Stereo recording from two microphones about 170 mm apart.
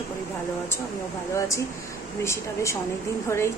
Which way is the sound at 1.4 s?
20° left (ahead or behind).